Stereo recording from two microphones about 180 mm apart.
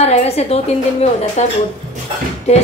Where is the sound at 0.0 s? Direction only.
35° left (ahead or behind).